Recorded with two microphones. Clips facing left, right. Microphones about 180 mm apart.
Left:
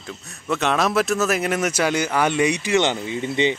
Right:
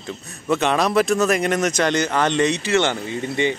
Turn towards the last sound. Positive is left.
turn(degrees=20)  # may be behind; listen again after turning